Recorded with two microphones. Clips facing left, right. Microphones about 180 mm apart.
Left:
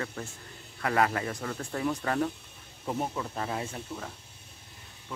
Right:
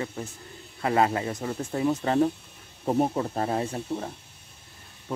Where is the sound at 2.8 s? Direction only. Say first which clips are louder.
Right 8 dB; 40° right (ahead or behind).